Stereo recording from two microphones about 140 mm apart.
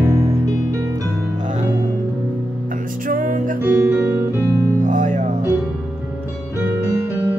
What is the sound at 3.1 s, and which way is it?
Music, 80° right.